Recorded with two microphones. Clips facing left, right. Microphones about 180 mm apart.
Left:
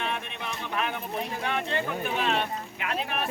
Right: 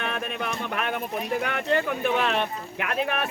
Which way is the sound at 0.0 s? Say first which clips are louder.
Right 4 dB; 65° right (ahead or behind).